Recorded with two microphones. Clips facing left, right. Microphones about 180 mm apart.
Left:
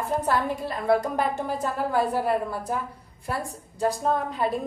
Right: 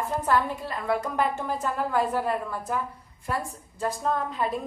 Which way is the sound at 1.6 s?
35° left (ahead or behind).